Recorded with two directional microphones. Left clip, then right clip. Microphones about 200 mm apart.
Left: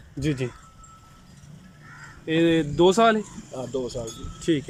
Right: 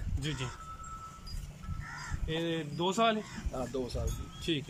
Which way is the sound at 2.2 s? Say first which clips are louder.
Left 14 dB; 55° left (ahead or behind).